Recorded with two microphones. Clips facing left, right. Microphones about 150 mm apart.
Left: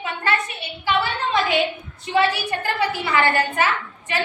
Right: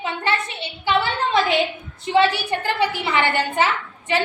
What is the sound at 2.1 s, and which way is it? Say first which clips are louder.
A woman's voice: right 2 dB; 25° right (ahead or behind).